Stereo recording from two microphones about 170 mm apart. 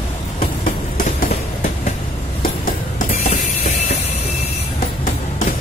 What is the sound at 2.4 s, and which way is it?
Music, 50° left (ahead or behind).